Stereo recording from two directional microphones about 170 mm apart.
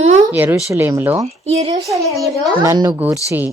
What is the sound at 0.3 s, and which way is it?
Speech, 10° right (ahead or behind).